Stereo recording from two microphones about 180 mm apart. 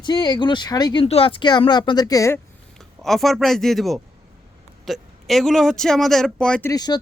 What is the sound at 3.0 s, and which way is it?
Speech, centre (ahead or behind).